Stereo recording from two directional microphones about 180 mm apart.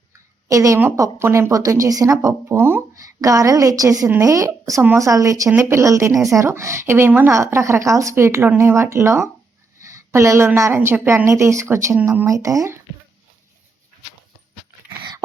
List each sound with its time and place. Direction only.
0.5 s speech: 20° right (ahead or behind)